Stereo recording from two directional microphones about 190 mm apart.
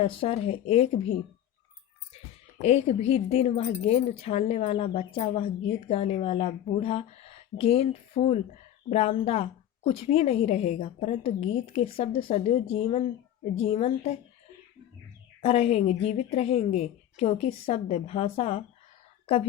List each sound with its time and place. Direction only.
0.0 s a woman's voice: 30° left (ahead or behind)
2.6 s a woman's voice: 35° left (ahead or behind)
15.4 s a woman's voice: 30° left (ahead or behind)